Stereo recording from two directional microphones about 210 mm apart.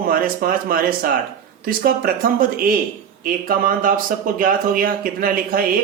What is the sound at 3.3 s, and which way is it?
Speech, 40° right (ahead or behind).